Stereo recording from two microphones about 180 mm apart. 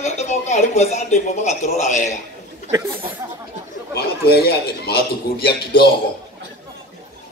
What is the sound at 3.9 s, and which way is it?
Speech, 60° left (ahead or behind).